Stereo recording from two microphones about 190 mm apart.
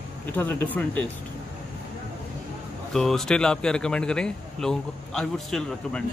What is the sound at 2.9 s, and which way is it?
Speech, centre (ahead or behind).